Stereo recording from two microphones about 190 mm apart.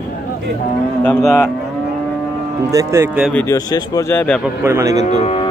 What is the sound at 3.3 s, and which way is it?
Speech, 10° left (ahead or behind).